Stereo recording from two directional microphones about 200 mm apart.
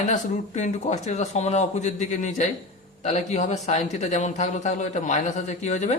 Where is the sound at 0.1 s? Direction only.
35° left (ahead or behind).